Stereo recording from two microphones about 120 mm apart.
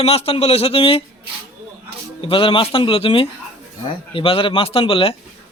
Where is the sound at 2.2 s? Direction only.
50° left (ahead or behind).